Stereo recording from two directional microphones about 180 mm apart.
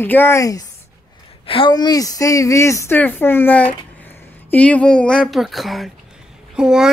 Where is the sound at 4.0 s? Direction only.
10° left (ahead or behind).